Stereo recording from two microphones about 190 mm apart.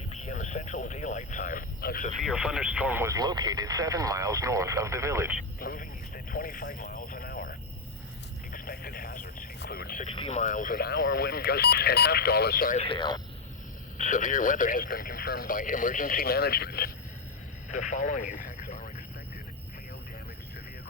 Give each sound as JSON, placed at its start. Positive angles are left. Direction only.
{"t": 0.1, "sound": "speech", "side_deg": 40}
{"t": 2.2, "sound": "speech", "side_deg": -5}
{"t": 5.5, "sound": "vehicle", "side_deg": 50}
{"t": 8.5, "sound": "radio", "side_deg": 50}
{"t": 9.6, "sound": "speech", "side_deg": 55}
{"t": 10.1, "sound": "speech", "side_deg": 35}
{"t": 12.7, "sound": "speech", "side_deg": 30}
{"t": 14.0, "sound": "speech", "side_deg": 40}
{"t": 17.7, "sound": "radio", "side_deg": 40}